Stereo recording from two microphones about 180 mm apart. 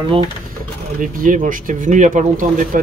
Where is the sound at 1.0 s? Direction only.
50° right (ahead or behind).